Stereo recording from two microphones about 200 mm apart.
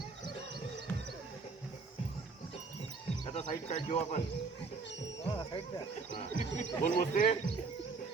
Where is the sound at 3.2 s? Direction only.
30° left (ahead or behind).